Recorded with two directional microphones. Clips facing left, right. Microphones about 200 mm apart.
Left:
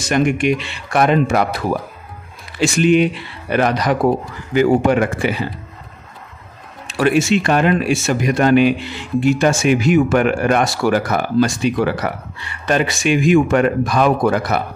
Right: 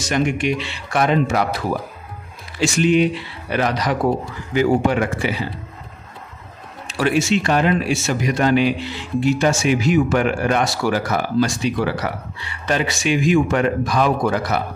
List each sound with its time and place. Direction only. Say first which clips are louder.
0.1 s a man's voice: left 4 dB; 55° left (ahead or behind)
2.6 s a man's voice: left 2 dB; 55° left (ahead or behind)
7.0 s speech: left 3 dB; 55° left (ahead or behind)